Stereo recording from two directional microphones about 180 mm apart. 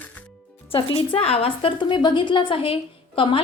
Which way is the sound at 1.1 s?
35° left (ahead or behind).